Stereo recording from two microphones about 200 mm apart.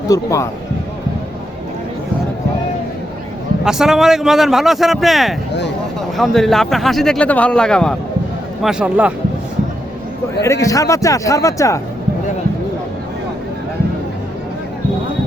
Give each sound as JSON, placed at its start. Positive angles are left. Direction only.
{"t": 0.1, "sound": "speech", "side_deg": 15}
{"t": 3.6, "sound": "a man's voice", "side_deg": 0}
{"t": 10.4, "sound": "speech", "side_deg": 15}